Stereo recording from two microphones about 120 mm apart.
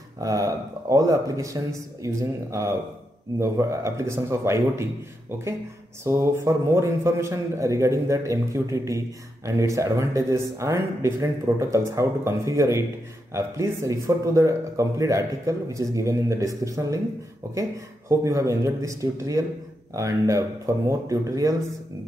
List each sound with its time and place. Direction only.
0.2 s a man's voice: 30° right (ahead or behind)
6.0 s a man's voice: 20° right (ahead or behind)